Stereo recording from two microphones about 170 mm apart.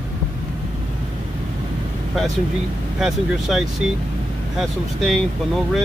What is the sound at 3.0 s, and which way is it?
Speech, centre (ahead or behind).